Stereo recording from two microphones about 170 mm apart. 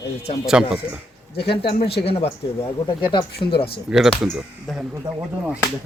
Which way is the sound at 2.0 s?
35° left (ahead or behind).